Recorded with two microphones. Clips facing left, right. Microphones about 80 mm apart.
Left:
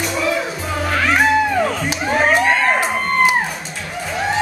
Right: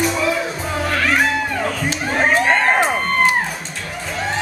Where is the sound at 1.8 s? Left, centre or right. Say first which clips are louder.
Left 2 dB; centre.